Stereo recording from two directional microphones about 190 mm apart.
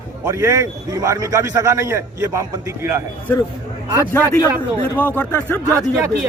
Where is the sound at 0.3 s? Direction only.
15° right (ahead or behind).